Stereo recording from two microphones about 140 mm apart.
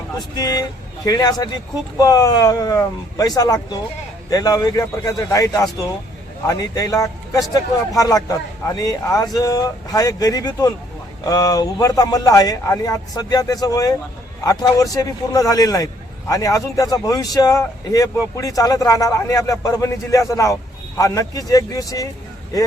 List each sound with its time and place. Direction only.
0.2 s speech: 25° left (ahead or behind)